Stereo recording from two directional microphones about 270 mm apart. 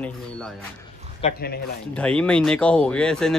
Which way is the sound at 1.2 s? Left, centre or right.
Left.